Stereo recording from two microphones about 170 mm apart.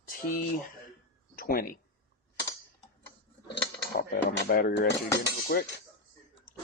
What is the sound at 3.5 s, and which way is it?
Speech, 75° left (ahead or behind).